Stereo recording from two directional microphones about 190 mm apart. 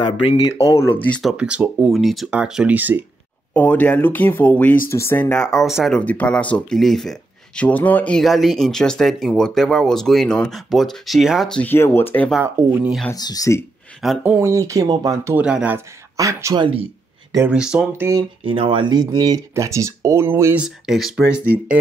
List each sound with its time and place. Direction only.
0.0 s speech: 30° left (ahead or behind)
0.7 s speech: 15° left (ahead or behind)
1.3 s speech: 5° right (ahead or behind)
3.5 s speech: 10° left (ahead or behind)
12.5 s speech: 5° right (ahead or behind)
13.1 s speech: 20° left (ahead or behind)
14.0 s speech: 5° right (ahead or behind); by 16.8 s 25° right (ahead or behind)
17.5 s speech: 5° right (ahead or behind)
18.4 s speech: 25° right (ahead or behind); by 20.6 s 10° right (ahead or behind)
20.6 s speech: centre (ahead or behind)